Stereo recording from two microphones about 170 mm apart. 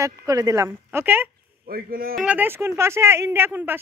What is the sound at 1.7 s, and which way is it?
Speech, 60° right (ahead or behind).